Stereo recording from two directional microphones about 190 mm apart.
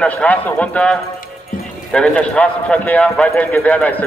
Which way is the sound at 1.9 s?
5° left (ahead or behind).